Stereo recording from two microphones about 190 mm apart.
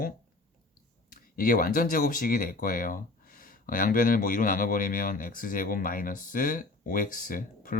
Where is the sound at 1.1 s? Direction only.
45° left (ahead or behind).